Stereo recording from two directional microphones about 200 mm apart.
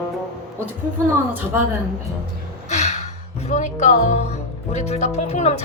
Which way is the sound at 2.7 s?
35° left (ahead or behind).